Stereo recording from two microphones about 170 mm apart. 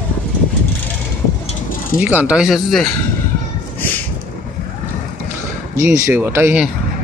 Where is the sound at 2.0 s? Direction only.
5° right (ahead or behind).